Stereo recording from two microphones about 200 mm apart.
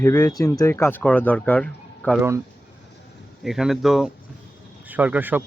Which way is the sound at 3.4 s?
Centre (ahead or behind).